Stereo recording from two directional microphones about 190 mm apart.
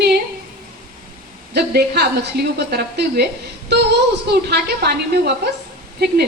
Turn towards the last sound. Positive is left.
turn(degrees=-55)  # may be behind; listen again after turning